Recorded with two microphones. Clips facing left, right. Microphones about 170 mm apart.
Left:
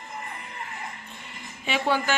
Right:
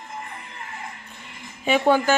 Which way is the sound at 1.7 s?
45° right (ahead or behind).